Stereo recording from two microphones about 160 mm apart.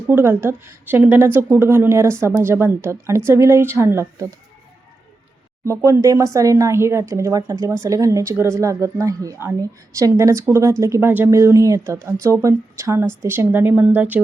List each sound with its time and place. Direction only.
0.1 s a woman's voice: 15° right (ahead or behind)
5.6 s a woman's voice: 20° right (ahead or behind)